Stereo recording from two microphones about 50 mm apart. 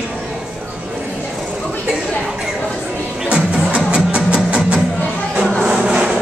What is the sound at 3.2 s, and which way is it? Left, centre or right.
Music, centre.